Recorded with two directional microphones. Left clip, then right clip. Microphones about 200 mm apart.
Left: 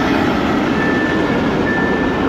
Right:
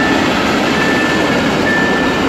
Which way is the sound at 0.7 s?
55° right (ahead or behind).